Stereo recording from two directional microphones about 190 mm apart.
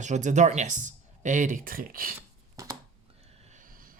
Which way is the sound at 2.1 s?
15° right (ahead or behind).